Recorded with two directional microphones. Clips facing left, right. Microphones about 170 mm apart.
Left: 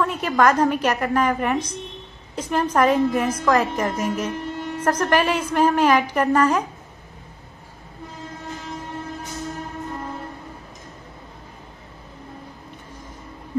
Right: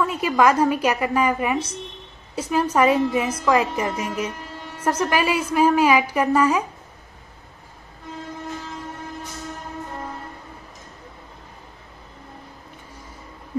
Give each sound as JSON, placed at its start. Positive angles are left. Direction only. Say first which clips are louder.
{"t": 0.0, "sound": "a woman's voice", "louder": "even", "side_deg": -10}